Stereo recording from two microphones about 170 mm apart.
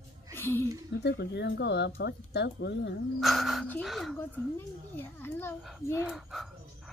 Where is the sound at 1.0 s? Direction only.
90° left.